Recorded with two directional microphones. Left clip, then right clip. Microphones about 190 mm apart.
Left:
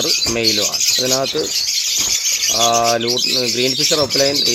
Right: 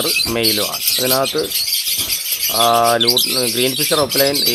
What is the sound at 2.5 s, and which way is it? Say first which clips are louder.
Bird: right 3 dB; 10° right (ahead or behind).